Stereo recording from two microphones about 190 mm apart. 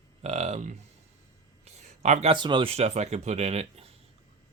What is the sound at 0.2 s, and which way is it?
Speech, 35° right (ahead or behind).